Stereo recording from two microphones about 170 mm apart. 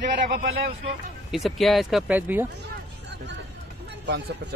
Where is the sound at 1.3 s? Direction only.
Centre (ahead or behind).